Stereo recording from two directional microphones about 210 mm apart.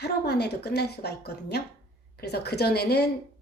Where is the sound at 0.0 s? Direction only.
50° left (ahead or behind).